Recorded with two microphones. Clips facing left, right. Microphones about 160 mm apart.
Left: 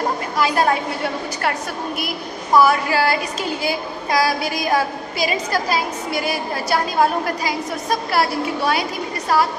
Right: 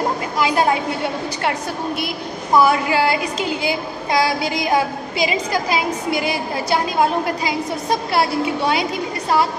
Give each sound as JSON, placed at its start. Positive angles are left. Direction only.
{"t": 0.4, "sound": "a woman's voice", "side_deg": -20}
{"t": 2.0, "sound": "a woman's voice", "side_deg": -25}